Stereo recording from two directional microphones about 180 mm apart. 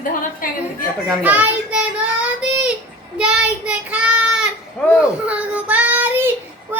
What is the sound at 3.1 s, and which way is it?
Child singing, 5° right (ahead or behind).